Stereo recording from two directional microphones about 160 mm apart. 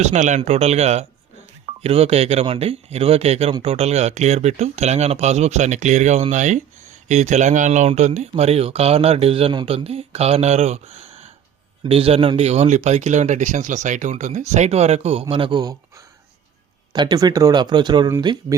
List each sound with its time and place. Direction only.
0.0 s speech: 45° right (ahead or behind); by 15.7 s 30° right (ahead or behind)
16.9 s speech: 25° right (ahead or behind)